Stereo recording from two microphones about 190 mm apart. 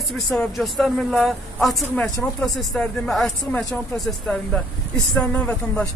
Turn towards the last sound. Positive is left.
turn(degrees=5)  # may be behind; listen again after turning